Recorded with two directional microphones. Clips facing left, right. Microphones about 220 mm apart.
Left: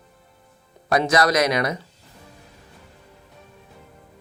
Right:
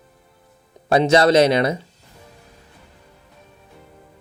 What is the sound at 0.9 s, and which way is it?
Speech, 25° right (ahead or behind).